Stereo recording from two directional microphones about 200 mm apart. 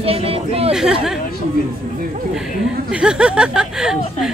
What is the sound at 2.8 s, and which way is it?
Speech, 5° right (ahead or behind).